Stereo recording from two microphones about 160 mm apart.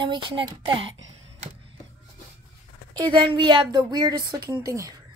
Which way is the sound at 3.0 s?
30° right (ahead or behind).